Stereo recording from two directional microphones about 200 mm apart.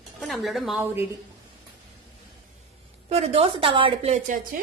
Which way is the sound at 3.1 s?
30° right (ahead or behind).